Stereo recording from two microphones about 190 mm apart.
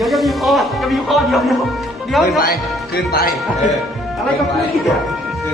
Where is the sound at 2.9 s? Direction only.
55° left (ahead or behind).